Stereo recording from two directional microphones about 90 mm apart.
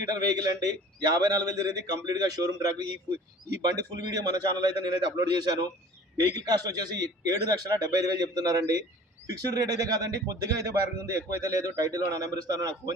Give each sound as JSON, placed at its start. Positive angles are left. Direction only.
{"t": 0.0, "sound": "a man's voice", "side_deg": -45}